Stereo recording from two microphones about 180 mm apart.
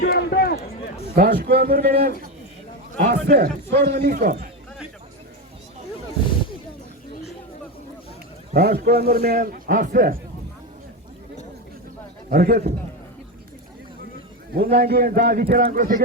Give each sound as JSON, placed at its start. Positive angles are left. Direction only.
{"t": 0.0, "sound": "run", "side_deg": 55}
{"t": 1.1, "sound": "a man's voice", "side_deg": -60}
{"t": 8.5, "sound": "a man's voice", "side_deg": -60}
{"t": 12.3, "sound": "a man's voice", "side_deg": -55}
{"t": 14.5, "sound": "a man's voice", "side_deg": -60}